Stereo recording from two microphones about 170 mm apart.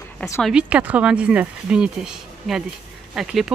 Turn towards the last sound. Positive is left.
turn(degrees=0)  # may be behind; listen again after turning